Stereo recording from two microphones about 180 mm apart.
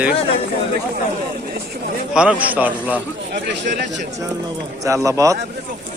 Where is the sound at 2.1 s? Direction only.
5° right (ahead or behind).